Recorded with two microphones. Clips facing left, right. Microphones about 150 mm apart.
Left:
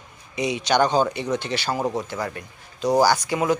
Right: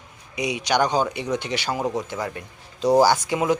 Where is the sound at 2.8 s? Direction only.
30° right (ahead or behind).